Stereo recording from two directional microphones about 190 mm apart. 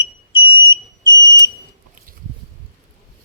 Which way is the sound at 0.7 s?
20° left (ahead or behind).